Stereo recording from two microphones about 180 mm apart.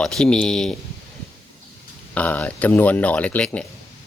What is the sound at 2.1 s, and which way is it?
Speech, 10° left (ahead or behind).